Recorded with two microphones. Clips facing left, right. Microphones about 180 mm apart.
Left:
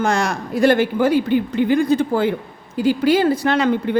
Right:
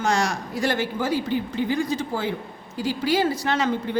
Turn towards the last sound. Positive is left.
turn(degrees=60)  # may be behind; listen again after turning